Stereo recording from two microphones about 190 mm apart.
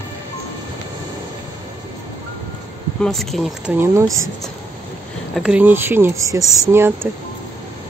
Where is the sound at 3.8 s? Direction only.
15° right (ahead or behind).